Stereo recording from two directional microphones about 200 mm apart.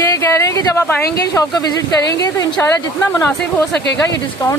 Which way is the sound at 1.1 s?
20° left (ahead or behind).